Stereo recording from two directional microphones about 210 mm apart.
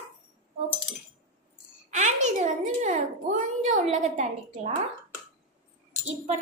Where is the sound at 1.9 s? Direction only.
35° right (ahead or behind).